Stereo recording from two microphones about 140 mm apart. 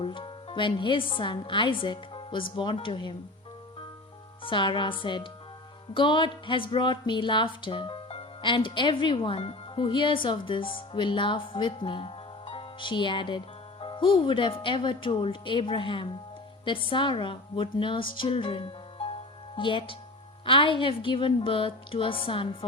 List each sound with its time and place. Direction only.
0.0 s a woman's voice: 40° left (ahead or behind)
4.4 s speech: 35° left (ahead or behind)